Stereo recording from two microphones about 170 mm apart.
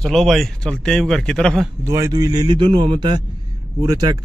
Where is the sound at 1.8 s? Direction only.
20° right (ahead or behind).